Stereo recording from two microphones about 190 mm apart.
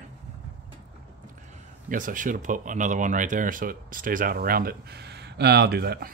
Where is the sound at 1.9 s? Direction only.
45° right (ahead or behind).